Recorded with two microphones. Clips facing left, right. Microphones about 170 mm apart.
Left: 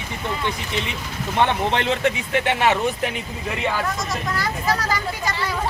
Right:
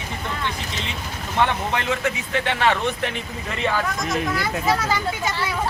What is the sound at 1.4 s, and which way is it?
Speech, 25° left (ahead or behind).